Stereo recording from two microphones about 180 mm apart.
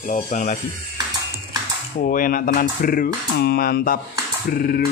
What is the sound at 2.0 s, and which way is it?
Speech, 50° left (ahead or behind).